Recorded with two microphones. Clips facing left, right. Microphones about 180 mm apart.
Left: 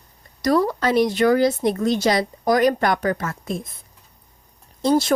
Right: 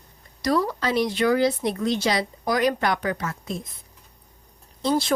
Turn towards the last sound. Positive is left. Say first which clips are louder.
# left 5 dB
turn(degrees=45)  # may be behind; listen again after turning